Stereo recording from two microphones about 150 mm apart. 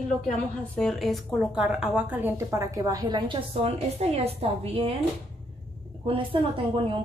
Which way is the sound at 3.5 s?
40° right (ahead or behind).